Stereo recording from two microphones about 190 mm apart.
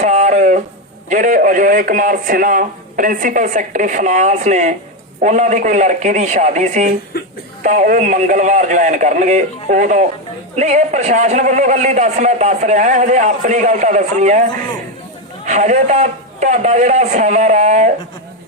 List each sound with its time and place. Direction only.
0.0 s a sound: 40° right (ahead or behind)
1.1 s a man's voice: 45° right (ahead or behind)
15.4 s a man's voice: 40° right (ahead or behind)